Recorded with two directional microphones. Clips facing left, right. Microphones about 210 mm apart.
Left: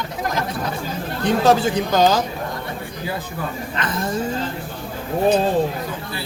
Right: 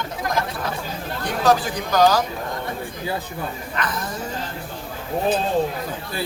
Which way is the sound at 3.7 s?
25° left (ahead or behind).